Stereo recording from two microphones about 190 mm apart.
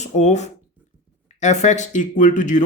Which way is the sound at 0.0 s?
35° left (ahead or behind).